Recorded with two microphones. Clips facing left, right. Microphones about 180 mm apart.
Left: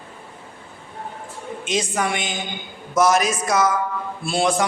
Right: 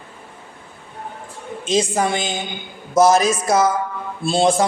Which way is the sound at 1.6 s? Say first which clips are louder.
Right 5 dB; 30° right (ahead or behind).